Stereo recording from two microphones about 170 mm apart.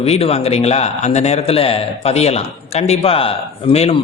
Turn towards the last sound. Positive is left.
turn(degrees=35)  # may be behind; listen again after turning